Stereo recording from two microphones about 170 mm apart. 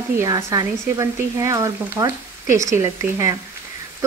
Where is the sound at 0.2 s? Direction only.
20° right (ahead or behind).